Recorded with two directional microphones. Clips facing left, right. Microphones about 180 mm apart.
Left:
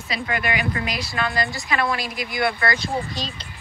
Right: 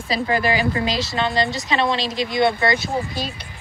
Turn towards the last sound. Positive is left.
turn(degrees=-5)  # may be behind; listen again after turning